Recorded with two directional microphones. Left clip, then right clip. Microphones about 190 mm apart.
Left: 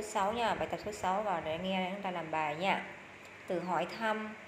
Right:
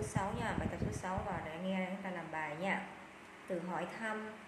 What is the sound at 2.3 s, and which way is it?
A woman's voice, 20° left (ahead or behind).